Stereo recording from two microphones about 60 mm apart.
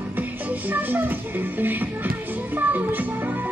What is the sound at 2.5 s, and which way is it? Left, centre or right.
Music, right.